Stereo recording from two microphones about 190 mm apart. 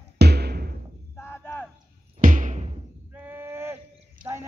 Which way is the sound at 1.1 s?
10° left (ahead or behind).